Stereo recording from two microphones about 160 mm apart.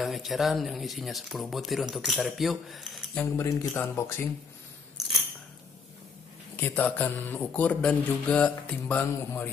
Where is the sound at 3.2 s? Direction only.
20° left (ahead or behind).